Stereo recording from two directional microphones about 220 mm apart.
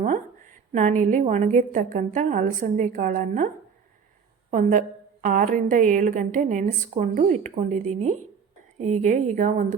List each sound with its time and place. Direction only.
0.7 s a woman's voice: 35° right (ahead or behind)
4.5 s a woman's voice: 35° right (ahead or behind)